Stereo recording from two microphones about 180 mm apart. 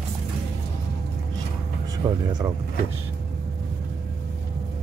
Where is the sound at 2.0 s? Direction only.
20° right (ahead or behind).